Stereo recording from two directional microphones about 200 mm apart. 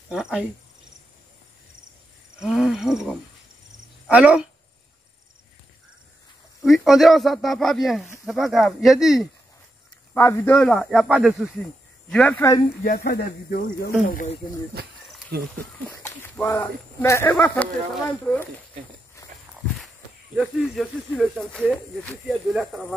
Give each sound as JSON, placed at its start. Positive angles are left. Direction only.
{"t": 0.1, "sound": "speech", "side_deg": -5}
{"t": 2.3, "sound": "speech", "side_deg": 0}
{"t": 6.6, "sound": "speech", "side_deg": 0}
{"t": 10.1, "sound": "speech", "side_deg": 10}
{"t": 12.8, "sound": "speech", "side_deg": 50}
{"t": 14.8, "sound": "speech", "side_deg": -50}
{"t": 15.9, "sound": "speech", "side_deg": 10}
{"t": 19.2, "sound": "walk", "side_deg": 15}
{"t": 20.3, "sound": "speech", "side_deg": 0}